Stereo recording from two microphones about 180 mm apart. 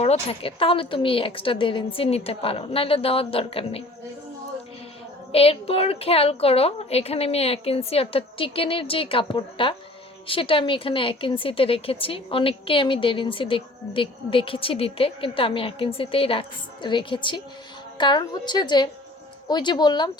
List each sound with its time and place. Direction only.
0.0 s a woman's voice: 35° left (ahead or behind)
5.3 s a woman's voice: 30° left (ahead or behind)